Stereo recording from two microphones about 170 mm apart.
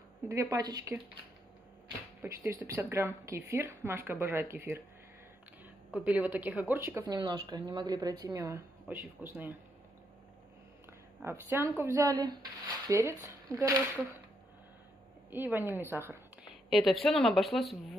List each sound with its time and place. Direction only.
0.3 s speech: 20° right (ahead or behind)
2.2 s a woman's voice: 15° right (ahead or behind)
5.9 s a woman's voice: 10° right (ahead or behind)
7.2 s a woman's voice: 30° right (ahead or behind); by 9.6 s 10° right (ahead or behind)
11.1 s a woman's voice: 15° right (ahead or behind)
15.3 s a woman's voice: 10° right (ahead or behind)
16.7 s speech: centre (ahead or behind)